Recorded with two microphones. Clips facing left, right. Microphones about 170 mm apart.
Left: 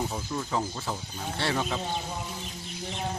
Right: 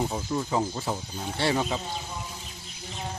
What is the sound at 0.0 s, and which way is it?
Speech, 15° right (ahead or behind).